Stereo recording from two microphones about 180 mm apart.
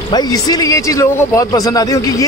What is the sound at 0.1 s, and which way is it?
A man's voice, 20° left (ahead or behind).